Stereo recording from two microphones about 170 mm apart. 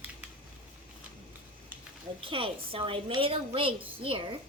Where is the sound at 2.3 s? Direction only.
30° right (ahead or behind).